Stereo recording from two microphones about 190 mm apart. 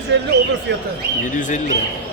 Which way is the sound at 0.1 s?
70° right (ahead or behind).